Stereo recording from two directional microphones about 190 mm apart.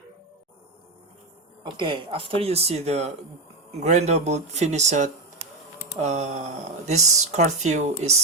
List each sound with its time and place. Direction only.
1.6 s speech: 25° right (ahead or behind)